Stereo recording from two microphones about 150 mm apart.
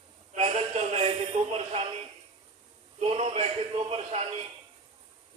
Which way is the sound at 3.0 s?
45° right (ahead or behind).